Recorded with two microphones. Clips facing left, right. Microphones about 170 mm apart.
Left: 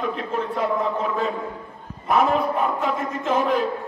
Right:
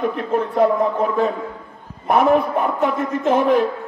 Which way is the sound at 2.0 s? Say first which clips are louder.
Right 4 dB; 55° right (ahead or behind).